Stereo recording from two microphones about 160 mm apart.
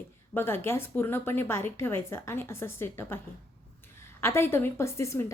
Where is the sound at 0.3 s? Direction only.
15° left (ahead or behind).